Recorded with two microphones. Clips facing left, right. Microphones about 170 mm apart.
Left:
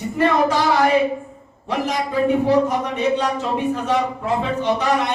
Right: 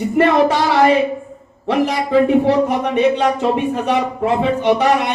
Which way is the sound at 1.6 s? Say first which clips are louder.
Right 5 dB; 90° right.